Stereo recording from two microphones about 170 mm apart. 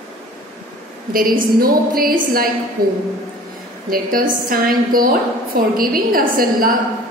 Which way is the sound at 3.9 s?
55° right (ahead or behind).